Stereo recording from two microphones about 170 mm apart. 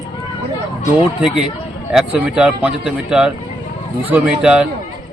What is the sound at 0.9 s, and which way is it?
Speech, 5° right (ahead or behind).